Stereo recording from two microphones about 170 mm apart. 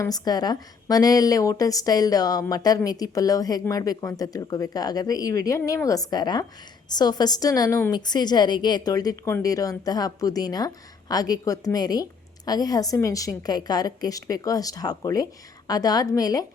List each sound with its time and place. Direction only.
0.0 s a woman's voice: 20° left (ahead or behind)